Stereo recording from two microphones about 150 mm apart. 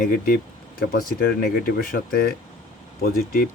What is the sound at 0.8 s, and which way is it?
Speech, 75° left (ahead or behind).